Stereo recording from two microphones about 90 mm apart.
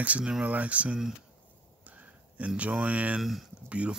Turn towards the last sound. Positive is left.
turn(degrees=-15)  # may be behind; listen again after turning